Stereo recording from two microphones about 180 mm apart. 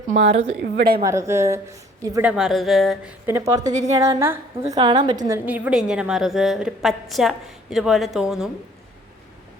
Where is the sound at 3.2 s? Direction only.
15° right (ahead or behind).